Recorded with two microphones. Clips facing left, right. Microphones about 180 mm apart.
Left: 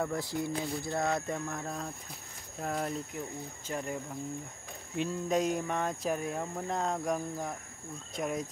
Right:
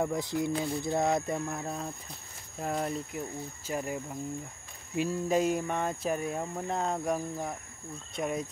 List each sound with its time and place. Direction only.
0.0 s speech: 20° right (ahead or behind); by 8.5 s centre (ahead or behind)